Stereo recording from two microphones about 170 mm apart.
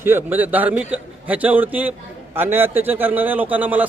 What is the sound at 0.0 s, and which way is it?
A man's voice, 15° right (ahead or behind).